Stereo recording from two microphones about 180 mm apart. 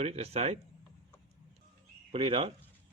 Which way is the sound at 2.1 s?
35° right (ahead or behind).